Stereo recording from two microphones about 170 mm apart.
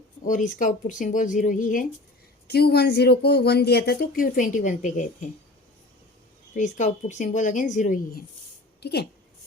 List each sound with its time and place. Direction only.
0.3 s a woman's voice: 50° left (ahead or behind)
2.5 s speech: 70° left (ahead or behind); by 5.3 s 45° left (ahead or behind)
6.5 s a woman's voice: 45° left (ahead or behind)
8.8 s a woman's voice: 75° left (ahead or behind)